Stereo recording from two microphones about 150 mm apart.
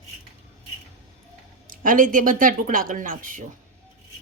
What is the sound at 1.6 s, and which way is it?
A woman's voice, 65° right (ahead or behind).